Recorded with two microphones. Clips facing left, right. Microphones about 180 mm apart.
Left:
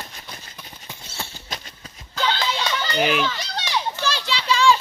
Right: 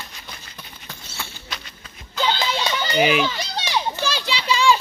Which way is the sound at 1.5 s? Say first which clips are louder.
Left 1 dB; 40° left (ahead or behind).